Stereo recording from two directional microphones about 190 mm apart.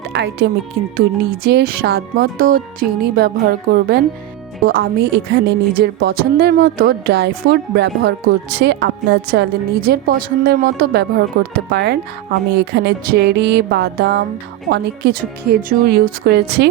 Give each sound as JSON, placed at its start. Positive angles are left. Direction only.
{"t": 0.1, "sound": "a woman's voice", "side_deg": -60}